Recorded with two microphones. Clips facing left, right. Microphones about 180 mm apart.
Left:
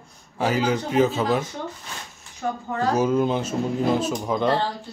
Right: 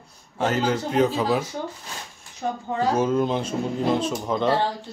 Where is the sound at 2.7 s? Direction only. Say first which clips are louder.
Even; 10° right (ahead or behind).